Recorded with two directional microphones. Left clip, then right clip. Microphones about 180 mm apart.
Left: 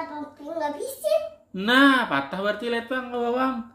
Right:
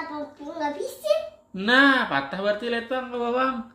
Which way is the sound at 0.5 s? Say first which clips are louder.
Even; 15° left (ahead or behind).